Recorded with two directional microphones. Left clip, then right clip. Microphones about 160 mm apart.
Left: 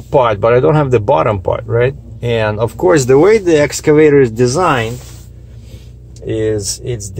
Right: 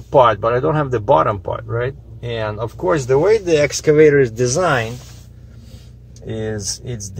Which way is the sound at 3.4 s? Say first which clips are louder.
Left 4 dB; 20° left (ahead or behind).